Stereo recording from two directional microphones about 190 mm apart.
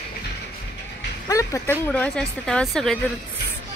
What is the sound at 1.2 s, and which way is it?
Speech, 15° left (ahead or behind).